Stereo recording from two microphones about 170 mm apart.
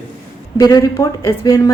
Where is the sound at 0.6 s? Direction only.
20° left (ahead or behind).